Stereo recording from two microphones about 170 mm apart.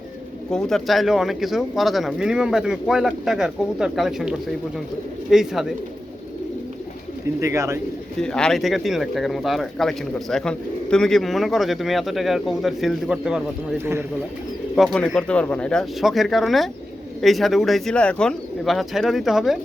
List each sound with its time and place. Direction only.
0.5 s speech: centre (ahead or behind)
7.4 s speech: 15° right (ahead or behind)
8.2 s speech: 5° left (ahead or behind)
14.8 s speech: centre (ahead or behind)